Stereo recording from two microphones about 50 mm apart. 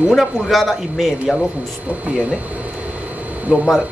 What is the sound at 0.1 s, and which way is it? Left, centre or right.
Speech, centre.